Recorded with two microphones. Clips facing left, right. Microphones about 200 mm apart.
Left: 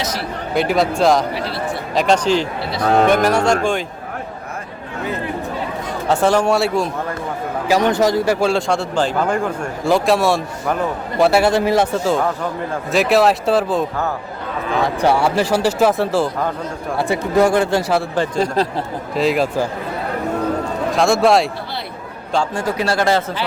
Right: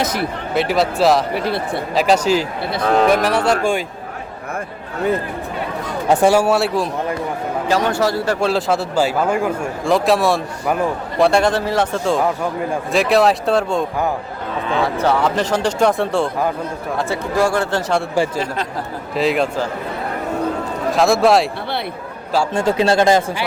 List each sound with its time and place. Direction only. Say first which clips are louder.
0.0 s speech: right 4 dB; 55° right (ahead or behind)
0.5 s speech: left 1 dB; centre (ahead or behind)
6.1 s speech: right 2 dB; 10° right (ahead or behind)
7.7 s speech: left 3 dB; 15° left (ahead or behind)
8.4 s speech: even; centre (ahead or behind)
11.2 s speech: left 1 dB; 5° left (ahead or behind)
12.9 s speech: left 1 dB; centre (ahead or behind)
14.9 s speech: left 3 dB; 10° left (ahead or behind)
17.0 s speech: left 3 dB; 15° left (ahead or behind)
18.1 s speech: left 1 dB; 10° right (ahead or behind)
20.9 s speech: right 1 dB; centre (ahead or behind)
22.5 s speech: right 4 dB; 25° right (ahead or behind)